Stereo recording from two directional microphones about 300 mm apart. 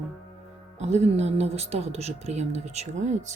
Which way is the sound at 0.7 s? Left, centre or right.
Right.